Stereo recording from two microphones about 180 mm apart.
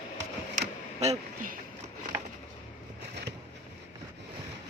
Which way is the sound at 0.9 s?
35° right (ahead or behind).